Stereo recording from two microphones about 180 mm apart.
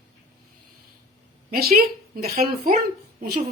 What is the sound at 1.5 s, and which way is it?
A woman's voice, 55° right (ahead or behind).